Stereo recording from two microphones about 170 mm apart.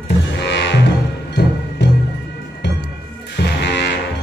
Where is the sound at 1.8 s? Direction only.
90° left.